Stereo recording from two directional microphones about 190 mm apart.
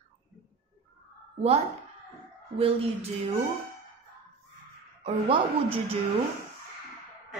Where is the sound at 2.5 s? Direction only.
30° right (ahead or behind).